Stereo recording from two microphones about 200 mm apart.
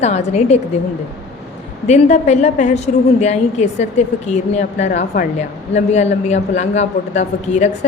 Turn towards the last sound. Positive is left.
turn(degrees=35)  # may be behind; listen again after turning